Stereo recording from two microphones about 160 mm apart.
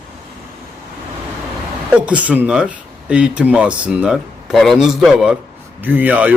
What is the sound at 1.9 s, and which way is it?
A man's voice, 10° right (ahead or behind).